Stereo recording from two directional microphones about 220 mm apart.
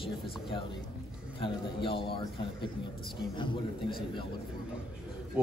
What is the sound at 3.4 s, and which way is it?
Speech, 20° left (ahead or behind).